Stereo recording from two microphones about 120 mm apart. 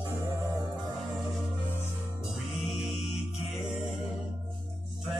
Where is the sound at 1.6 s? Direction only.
20° left (ahead or behind).